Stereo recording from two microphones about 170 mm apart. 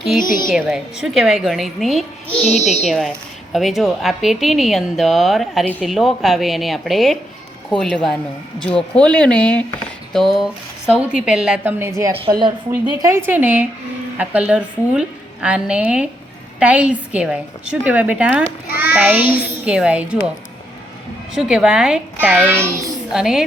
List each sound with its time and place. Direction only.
0.5 s a woman's voice: 5° right (ahead or behind)
21.3 s a woman's voice: 5° right (ahead or behind)
23.1 s a woman's voice: 5° right (ahead or behind)